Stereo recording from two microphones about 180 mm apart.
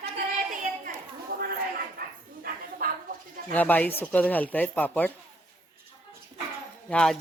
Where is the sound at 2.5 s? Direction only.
55° right (ahead or behind).